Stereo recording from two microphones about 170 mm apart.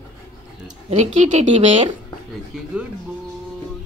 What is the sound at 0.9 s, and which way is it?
A woman's voice, 45° right (ahead or behind).